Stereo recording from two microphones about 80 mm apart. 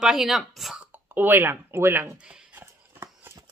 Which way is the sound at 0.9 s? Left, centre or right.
Right.